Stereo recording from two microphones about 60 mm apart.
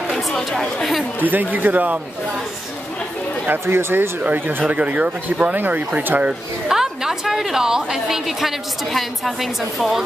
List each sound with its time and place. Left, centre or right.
0.1 s chatter: centre
1.2 s speech: right
3.6 s speech: right
4.2 s speech: right
6.7 s a woman's voice: centre